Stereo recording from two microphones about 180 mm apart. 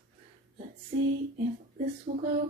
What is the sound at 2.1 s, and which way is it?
Speech, 50° right (ahead or behind).